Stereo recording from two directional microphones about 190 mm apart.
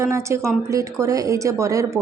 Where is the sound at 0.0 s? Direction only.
15° right (ahead or behind).